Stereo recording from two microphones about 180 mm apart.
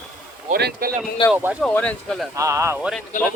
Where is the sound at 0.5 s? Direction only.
55° right (ahead or behind).